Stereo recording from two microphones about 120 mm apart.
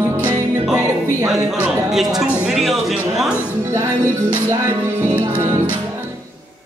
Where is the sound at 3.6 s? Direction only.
20° right (ahead or behind).